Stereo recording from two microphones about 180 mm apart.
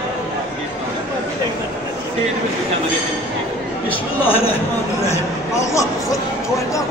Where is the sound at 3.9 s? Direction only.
10° left (ahead or behind).